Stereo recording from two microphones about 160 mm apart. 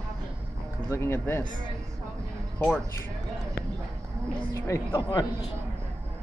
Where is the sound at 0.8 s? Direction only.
15° left (ahead or behind).